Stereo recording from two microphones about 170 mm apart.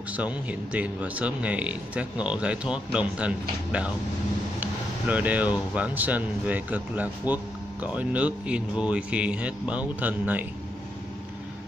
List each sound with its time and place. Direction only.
0.1 s speech: 10° right (ahead or behind)